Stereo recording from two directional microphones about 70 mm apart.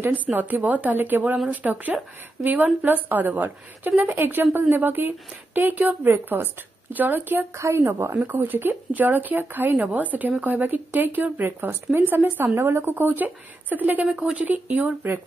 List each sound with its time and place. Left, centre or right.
0.0 s a woman's voice: right
7.5 s a woman's voice: right